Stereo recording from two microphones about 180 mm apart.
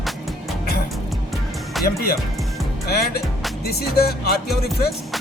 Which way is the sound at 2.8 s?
60° left (ahead or behind).